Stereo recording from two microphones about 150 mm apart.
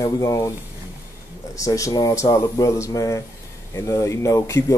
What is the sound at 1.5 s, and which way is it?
Speech, 20° left (ahead or behind).